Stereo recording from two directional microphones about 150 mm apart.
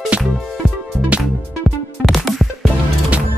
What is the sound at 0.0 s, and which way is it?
Music, centre (ahead or behind).